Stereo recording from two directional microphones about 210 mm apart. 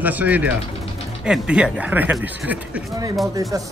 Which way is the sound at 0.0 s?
10° right (ahead or behind).